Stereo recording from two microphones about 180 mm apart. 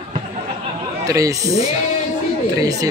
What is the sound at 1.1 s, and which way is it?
A man's voice, 20° right (ahead or behind).